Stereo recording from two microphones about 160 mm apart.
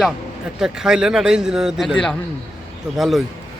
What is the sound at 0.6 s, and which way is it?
Speech, 5° right (ahead or behind).